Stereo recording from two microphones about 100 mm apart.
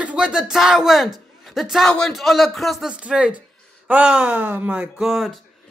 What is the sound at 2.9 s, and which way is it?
Speech, 10° right (ahead or behind).